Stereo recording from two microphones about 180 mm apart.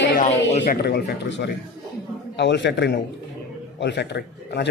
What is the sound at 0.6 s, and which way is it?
A man's voice, 60° left (ahead or behind).